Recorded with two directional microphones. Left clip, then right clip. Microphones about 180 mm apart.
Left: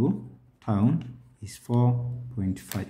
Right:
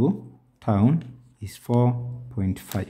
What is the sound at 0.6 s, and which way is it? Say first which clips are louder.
Speech: right 4 dB; 35° right (ahead or behind).